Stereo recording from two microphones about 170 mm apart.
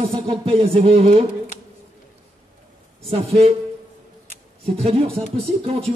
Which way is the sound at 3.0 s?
35° right (ahead or behind).